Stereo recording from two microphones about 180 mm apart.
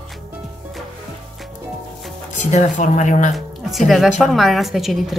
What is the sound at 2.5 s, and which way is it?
Speech, 45° left (ahead or behind).